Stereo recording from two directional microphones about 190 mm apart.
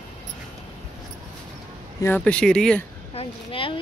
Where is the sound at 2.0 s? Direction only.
10° left (ahead or behind).